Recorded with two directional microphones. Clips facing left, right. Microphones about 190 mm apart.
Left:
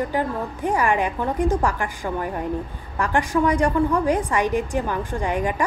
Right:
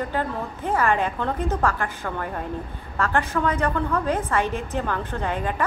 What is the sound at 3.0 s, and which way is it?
A woman's voice, 15° left (ahead or behind).